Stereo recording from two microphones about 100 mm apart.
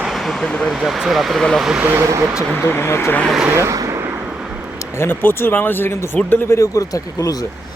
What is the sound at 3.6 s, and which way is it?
Vehicle, 30° right (ahead or behind).